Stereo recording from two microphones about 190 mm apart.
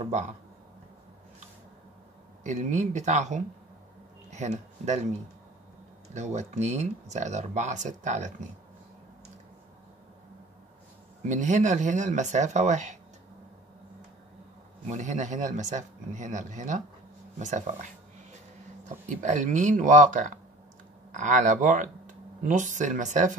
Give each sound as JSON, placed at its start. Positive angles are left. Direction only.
{"t": 0.0, "sound": "speech", "side_deg": -40}
{"t": 2.4, "sound": "speech", "side_deg": -40}
{"t": 6.1, "sound": "speech", "side_deg": -40}
{"t": 11.2, "sound": "speech", "side_deg": -40}
{"t": 14.9, "sound": "speech", "side_deg": -40}
{"t": 19.0, "sound": "speech", "side_deg": -40}